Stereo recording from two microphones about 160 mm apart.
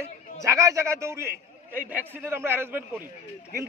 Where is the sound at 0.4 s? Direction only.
20° right (ahead or behind).